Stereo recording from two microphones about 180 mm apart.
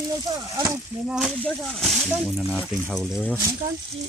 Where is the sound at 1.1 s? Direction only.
Centre (ahead or behind).